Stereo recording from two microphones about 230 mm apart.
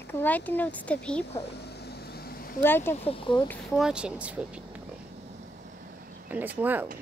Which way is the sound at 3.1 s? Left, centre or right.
Left.